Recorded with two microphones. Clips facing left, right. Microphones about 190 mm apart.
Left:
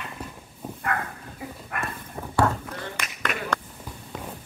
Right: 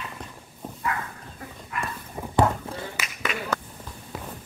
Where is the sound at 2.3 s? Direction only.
20° right (ahead or behind).